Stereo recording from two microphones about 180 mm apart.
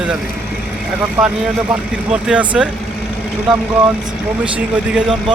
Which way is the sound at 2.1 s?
5° right (ahead or behind).